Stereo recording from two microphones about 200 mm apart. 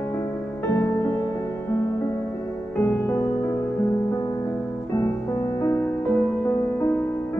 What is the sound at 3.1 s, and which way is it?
Music, 15° left (ahead or behind).